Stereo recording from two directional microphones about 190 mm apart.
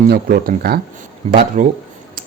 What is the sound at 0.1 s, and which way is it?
Speech, 50° right (ahead or behind).